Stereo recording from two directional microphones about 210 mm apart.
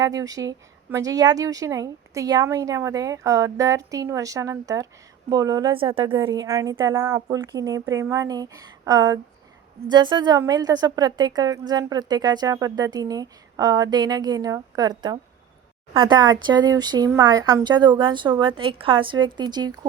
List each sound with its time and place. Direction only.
0.0 s a woman's voice: 15° right (ahead or behind)